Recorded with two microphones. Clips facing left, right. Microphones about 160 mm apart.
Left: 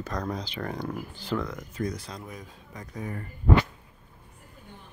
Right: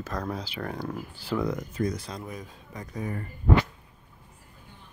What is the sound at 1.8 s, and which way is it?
Speech, 20° right (ahead or behind).